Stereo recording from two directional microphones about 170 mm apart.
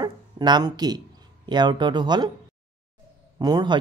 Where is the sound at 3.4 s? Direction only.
25° right (ahead or behind).